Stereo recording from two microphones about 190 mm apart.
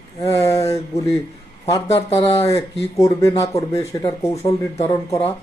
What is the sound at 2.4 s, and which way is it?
Speech, 15° left (ahead or behind).